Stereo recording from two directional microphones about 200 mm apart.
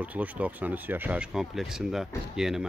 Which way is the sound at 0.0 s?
5° right (ahead or behind).